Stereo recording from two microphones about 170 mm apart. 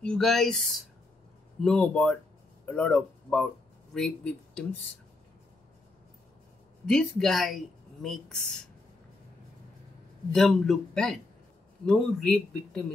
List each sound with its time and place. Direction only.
0.0 s speech: centre (ahead or behind)
6.9 s speech: 5° left (ahead or behind)
10.3 s speech: centre (ahead or behind)